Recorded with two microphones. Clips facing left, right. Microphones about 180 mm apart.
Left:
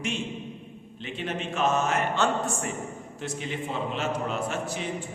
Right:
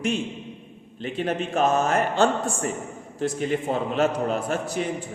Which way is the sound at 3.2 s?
45° right (ahead or behind).